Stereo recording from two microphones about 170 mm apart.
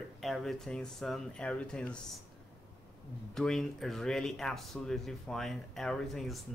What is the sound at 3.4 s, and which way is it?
Speech, centre (ahead or behind).